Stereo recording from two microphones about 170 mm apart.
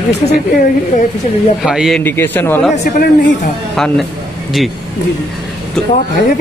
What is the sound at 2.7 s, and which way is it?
Speech, 40° left (ahead or behind).